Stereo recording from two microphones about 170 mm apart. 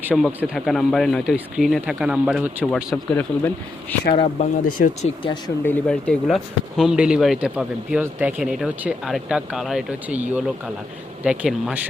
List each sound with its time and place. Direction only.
0.0 s speech: 10° right (ahead or behind)
2.9 s speech: 10° left (ahead or behind)
4.4 s speech: 50° left (ahead or behind)
5.6 s speech: 5° left (ahead or behind)